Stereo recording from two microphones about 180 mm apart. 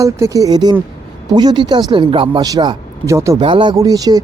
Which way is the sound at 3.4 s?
30° right (ahead or behind).